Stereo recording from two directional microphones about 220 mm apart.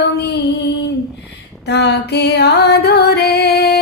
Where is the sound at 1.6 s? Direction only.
50° left (ahead or behind).